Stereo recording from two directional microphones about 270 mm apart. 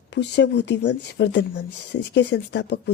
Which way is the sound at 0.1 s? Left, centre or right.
Left.